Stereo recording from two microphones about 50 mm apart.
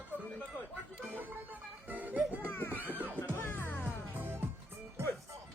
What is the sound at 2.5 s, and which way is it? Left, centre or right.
Music, left.